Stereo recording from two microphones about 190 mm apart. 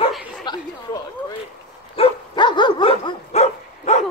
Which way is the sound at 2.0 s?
25° left (ahead or behind).